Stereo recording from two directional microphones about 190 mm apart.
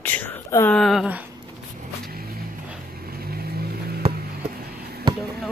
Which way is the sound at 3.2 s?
55° right (ahead or behind).